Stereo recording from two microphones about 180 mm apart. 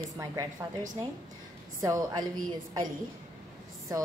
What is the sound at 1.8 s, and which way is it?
Speech, 20° right (ahead or behind).